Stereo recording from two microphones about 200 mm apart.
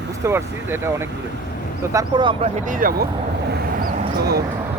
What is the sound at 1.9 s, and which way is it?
Speech, 25° right (ahead or behind).